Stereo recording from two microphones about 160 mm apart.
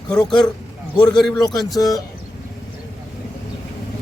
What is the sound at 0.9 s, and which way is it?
Speech, 30° left (ahead or behind).